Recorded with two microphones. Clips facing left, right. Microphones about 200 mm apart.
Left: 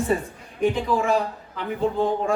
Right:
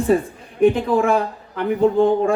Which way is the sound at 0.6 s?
55° right (ahead or behind).